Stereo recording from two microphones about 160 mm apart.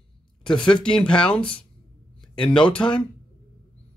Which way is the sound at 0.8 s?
5° left (ahead or behind).